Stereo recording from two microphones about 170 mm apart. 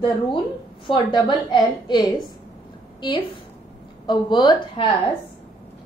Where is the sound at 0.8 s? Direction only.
30° left (ahead or behind).